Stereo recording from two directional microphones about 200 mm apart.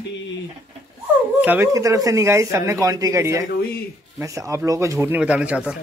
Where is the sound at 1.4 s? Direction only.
10° right (ahead or behind).